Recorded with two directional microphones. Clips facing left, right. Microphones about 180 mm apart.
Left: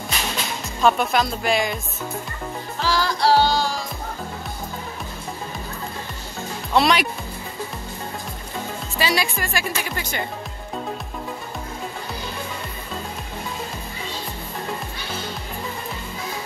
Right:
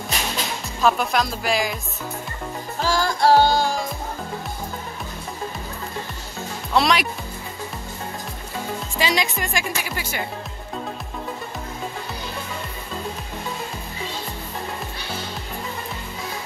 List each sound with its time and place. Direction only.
0.7 s speech: centre (ahead or behind)
2.8 s music: 45° right (ahead or behind)
6.7 s speech: centre (ahead or behind)
8.9 s speech: 15° right (ahead or behind)